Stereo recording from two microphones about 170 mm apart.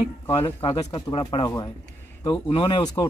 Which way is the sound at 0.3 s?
30° left (ahead or behind).